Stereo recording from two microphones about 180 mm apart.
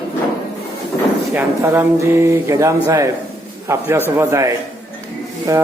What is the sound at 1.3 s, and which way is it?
Speech, 15° right (ahead or behind).